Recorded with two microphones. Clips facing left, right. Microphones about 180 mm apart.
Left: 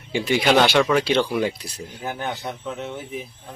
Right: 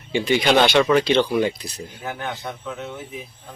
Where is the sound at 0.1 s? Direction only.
5° left (ahead or behind).